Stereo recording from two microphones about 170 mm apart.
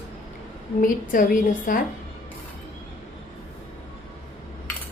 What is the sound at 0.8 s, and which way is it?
A woman's voice, 55° left (ahead or behind).